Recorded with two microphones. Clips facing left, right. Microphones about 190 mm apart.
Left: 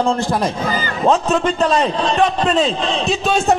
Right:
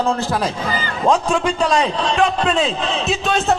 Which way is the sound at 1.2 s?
10° right (ahead or behind).